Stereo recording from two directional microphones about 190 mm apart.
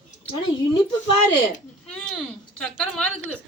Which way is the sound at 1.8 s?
5° left (ahead or behind).